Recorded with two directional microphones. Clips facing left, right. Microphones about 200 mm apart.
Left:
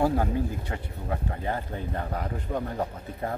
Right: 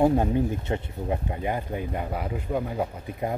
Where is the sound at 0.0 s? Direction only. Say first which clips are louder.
Right 4 dB; 20° right (ahead or behind).